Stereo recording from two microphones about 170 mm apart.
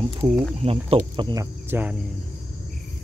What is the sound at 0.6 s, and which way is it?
Speech, 35° right (ahead or behind).